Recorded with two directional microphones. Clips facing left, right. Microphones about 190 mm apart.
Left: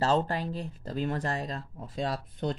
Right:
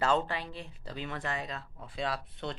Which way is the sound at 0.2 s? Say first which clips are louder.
Left 5 dB; 40° left (ahead or behind).